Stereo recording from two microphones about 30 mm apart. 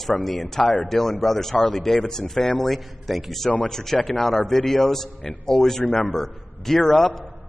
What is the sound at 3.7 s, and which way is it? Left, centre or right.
A man's voice, centre.